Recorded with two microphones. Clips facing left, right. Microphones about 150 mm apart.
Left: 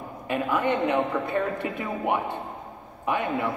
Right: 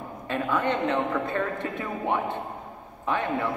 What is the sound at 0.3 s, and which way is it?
A man's voice, 15° left (ahead or behind).